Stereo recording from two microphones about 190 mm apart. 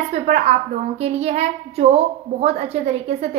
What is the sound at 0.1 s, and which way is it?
A woman's voice, 35° right (ahead or behind).